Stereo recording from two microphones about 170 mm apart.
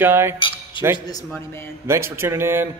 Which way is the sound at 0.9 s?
25° left (ahead or behind).